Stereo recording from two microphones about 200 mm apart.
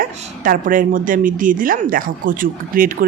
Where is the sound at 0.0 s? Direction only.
45° right (ahead or behind).